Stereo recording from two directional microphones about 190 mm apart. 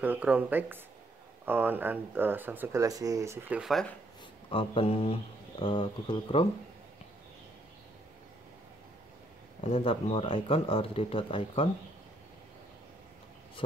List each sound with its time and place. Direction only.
0.0 s speech: 10° right (ahead or behind)
4.5 s speech: 30° left (ahead or behind)
9.6 s speech: 30° left (ahead or behind)
13.6 s speech: 25° left (ahead or behind)